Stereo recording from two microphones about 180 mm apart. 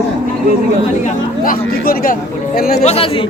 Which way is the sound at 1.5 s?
55° left (ahead or behind).